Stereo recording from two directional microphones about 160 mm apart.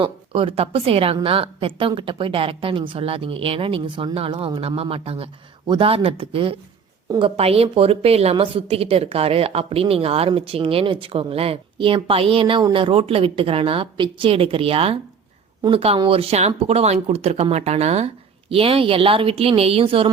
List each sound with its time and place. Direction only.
0.0 s a woman's voice: 35° right (ahead or behind)